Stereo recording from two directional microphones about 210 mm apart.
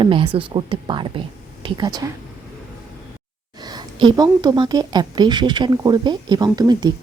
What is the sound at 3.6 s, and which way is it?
A woman's voice, 20° right (ahead or behind).